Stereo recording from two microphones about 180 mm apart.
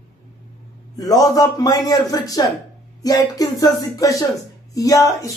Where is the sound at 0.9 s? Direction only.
20° left (ahead or behind).